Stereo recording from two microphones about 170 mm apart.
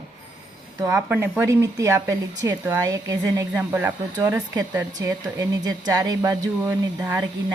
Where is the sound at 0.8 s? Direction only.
15° right (ahead or behind).